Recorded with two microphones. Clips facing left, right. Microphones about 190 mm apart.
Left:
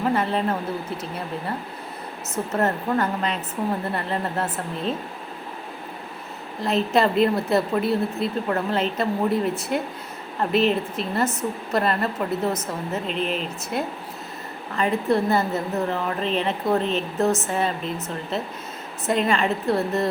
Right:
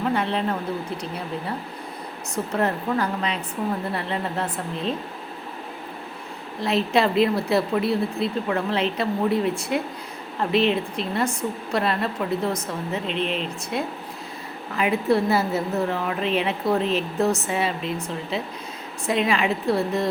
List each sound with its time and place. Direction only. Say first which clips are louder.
0.0 s a woman's voice: left 1 dB; centre (ahead or behind)
6.9 s a woman's voice: left 1 dB; centre (ahead or behind)